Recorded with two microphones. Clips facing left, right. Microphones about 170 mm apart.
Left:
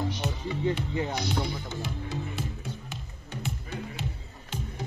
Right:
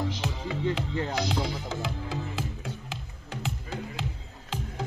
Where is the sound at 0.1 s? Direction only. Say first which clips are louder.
Even; 90° right.